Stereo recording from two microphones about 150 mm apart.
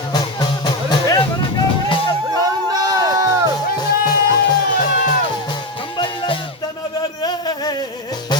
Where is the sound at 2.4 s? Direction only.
25° right (ahead or behind).